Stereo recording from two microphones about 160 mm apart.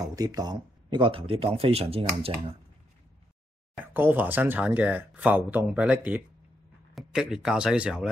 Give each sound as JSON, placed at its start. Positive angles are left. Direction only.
{"t": 0.0, "sound": "speech", "side_deg": -25}
{"t": 3.8, "sound": "speech", "side_deg": -10}